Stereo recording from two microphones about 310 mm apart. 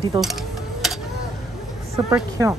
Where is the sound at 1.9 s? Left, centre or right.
Centre.